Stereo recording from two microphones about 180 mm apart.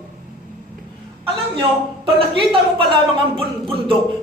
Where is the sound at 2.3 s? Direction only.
30° right (ahead or behind).